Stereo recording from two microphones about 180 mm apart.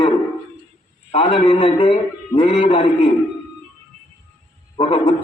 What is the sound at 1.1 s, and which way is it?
A man's voice, 30° left (ahead or behind).